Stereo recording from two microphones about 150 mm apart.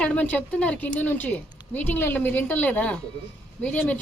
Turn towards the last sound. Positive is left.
turn(degrees=10)  # may be behind; listen again after turning